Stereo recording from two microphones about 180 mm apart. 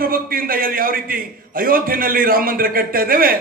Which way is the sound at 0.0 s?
55° right (ahead or behind).